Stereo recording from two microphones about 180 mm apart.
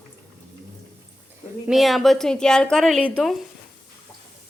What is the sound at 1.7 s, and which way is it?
A woman's voice, centre (ahead or behind).